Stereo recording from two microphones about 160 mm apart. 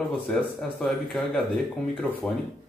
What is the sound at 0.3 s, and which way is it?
Speech, 5° left (ahead or behind).